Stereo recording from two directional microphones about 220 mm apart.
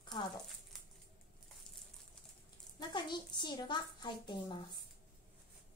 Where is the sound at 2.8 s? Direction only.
20° left (ahead or behind).